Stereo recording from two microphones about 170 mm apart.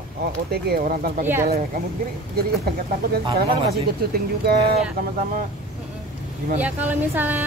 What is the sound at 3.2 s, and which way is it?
Speech, 30° right (ahead or behind).